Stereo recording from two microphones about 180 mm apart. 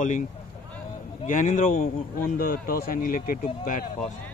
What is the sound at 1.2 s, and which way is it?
A man's voice, 45° left (ahead or behind).